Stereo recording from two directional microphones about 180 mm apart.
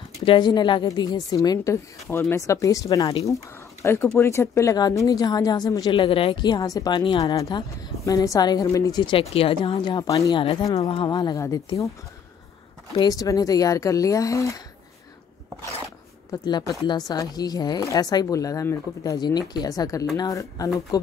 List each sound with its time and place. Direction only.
0.2 s speech: 25° left (ahead or behind)
10.8 s speech: 30° left (ahead or behind)
12.9 s speech: 20° left (ahead or behind)
16.3 s speech: 20° left (ahead or behind)